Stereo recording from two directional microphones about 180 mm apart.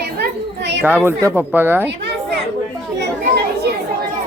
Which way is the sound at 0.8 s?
10° right (ahead or behind).